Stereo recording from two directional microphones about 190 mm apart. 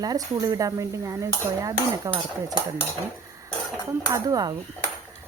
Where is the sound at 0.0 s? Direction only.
20° right (ahead or behind).